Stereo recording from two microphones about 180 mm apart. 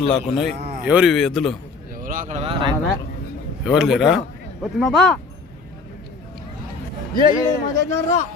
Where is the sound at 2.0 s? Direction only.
50° right (ahead or behind).